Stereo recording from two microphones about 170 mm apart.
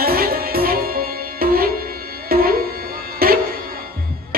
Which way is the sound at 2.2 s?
65° right (ahead or behind).